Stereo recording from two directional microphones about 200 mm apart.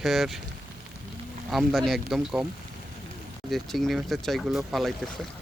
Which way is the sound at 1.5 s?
Centre (ahead or behind).